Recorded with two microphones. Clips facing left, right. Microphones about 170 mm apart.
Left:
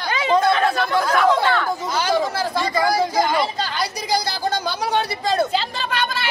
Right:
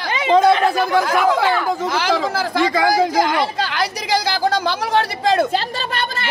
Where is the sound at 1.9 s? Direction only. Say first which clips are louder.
Right 1 dB; 90° right.